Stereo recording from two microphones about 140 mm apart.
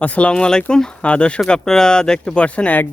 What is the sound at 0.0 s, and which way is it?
A man's voice, 10° left (ahead or behind).